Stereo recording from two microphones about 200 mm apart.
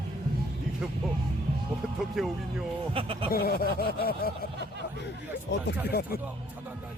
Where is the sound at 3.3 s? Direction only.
50° left (ahead or behind).